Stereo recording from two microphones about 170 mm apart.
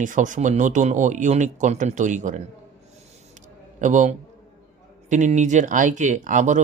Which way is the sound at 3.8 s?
45° right (ahead or behind).